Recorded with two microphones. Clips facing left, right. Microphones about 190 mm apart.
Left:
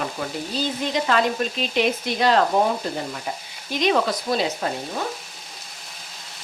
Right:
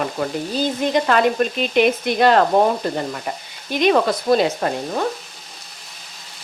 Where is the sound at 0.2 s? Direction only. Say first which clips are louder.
Right 5 dB; 50° right (ahead or behind).